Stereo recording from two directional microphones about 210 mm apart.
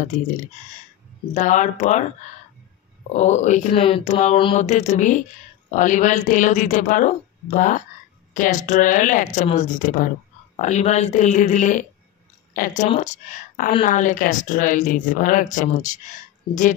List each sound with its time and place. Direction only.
1.3 s speech: 35° left (ahead or behind)
3.2 s speech: 35° left (ahead or behind)